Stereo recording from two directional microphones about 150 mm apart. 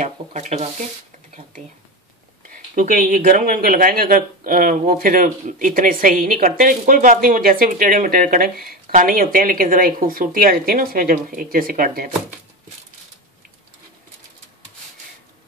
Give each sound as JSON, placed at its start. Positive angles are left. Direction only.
{"t": 0.0, "sound": "speech", "side_deg": -50}
{"t": 2.5, "sound": "speech", "side_deg": -60}